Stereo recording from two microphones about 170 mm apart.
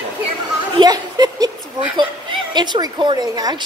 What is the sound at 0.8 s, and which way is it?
Speech, 20° right (ahead or behind).